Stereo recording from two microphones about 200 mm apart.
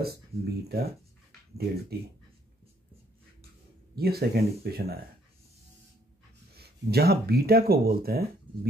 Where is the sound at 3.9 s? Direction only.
50° right (ahead or behind).